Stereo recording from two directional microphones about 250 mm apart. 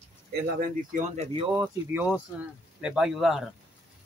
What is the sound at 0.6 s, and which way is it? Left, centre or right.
Speech, right.